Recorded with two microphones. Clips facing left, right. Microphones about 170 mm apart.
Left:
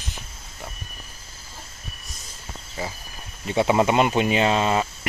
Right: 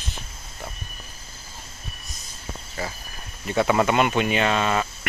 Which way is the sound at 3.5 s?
20° left (ahead or behind).